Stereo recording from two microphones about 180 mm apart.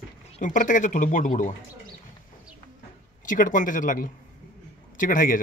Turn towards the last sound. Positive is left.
turn(degrees=50)  # may be behind; listen again after turning